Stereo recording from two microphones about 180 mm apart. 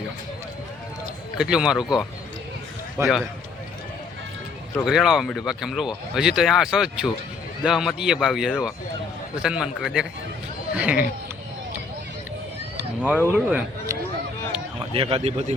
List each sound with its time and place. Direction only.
1.4 s a man's voice: 5° right (ahead or behind)
3.0 s speech: 15° right (ahead or behind)
4.9 s a man's voice: centre (ahead or behind)
12.7 s a sound: 10° right (ahead or behind)
13.2 s speech: 10° right (ahead or behind)
14.9 s speech: 30° right (ahead or behind)